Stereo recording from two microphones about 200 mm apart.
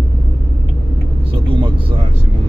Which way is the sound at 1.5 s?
25° right (ahead or behind).